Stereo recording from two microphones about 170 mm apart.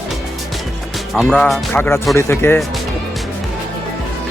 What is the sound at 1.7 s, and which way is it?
Speech, 15° left (ahead or behind).